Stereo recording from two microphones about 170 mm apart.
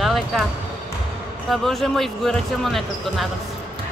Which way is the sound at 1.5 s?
Centre (ahead or behind).